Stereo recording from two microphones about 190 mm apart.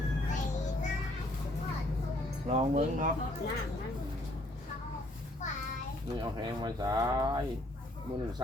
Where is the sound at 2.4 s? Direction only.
35° right (ahead or behind).